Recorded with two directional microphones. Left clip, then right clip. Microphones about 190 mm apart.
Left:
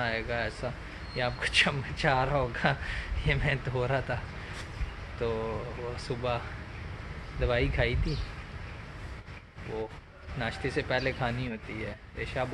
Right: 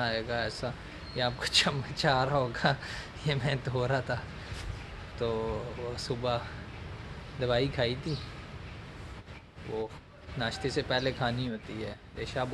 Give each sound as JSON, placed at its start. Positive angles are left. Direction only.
{"t": 0.0, "sound": "a man's voice", "side_deg": -15}
{"t": 5.2, "sound": "a man's voice", "side_deg": -15}
{"t": 10.4, "sound": "a man's voice", "side_deg": -15}